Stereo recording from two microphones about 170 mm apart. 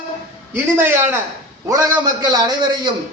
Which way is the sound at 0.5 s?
10° right (ahead or behind).